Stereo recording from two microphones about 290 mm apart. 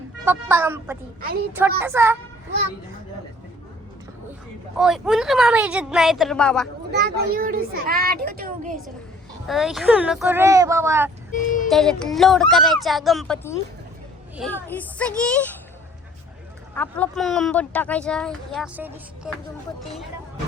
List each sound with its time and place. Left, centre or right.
0.3 s speech: centre
4.8 s speech: centre
6.9 s speech: right
9.5 s speech: centre
11.3 s speech: left
11.7 s speech: centre
16.7 s speech: centre